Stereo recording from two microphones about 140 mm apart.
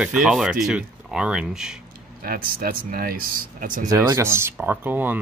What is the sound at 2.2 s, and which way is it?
Speech, 90° right.